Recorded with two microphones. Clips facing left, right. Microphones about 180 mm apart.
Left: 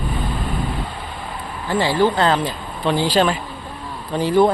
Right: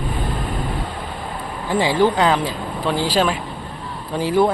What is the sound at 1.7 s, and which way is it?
Speech, 15° right (ahead or behind).